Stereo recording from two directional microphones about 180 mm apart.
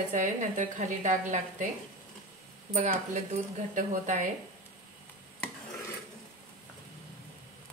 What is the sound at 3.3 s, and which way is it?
Speech, 45° right (ahead or behind).